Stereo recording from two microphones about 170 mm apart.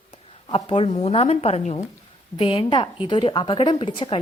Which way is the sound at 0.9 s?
35° left (ahead or behind).